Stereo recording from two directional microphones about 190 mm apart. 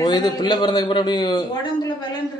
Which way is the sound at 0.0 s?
20° left (ahead or behind).